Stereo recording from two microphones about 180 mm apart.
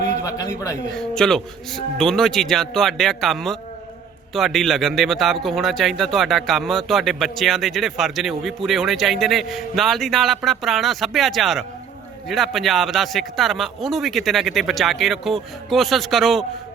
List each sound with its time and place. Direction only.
0.2 s a man's voice: 20° left (ahead or behind)
0.9 s speech: 5° left (ahead or behind)